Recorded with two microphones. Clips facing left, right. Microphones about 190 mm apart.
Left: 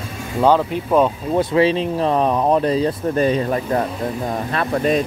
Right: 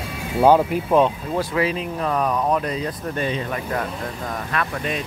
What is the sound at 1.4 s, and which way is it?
Speech, 25° left (ahead or behind).